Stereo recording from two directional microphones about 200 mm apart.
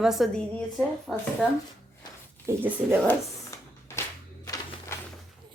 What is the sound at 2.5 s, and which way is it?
Speech, 10° right (ahead or behind).